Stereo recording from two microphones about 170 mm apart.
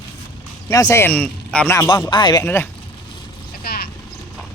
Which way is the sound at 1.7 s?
15° left (ahead or behind).